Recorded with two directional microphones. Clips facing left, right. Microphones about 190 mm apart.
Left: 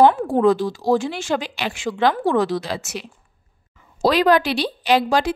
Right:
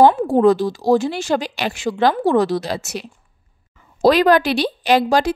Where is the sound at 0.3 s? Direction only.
40° right (ahead or behind).